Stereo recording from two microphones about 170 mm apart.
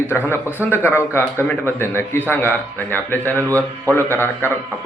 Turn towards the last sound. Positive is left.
turn(degrees=15)  # may be behind; listen again after turning